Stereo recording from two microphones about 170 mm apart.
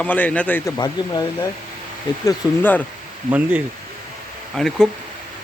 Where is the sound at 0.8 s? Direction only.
25° left (ahead or behind).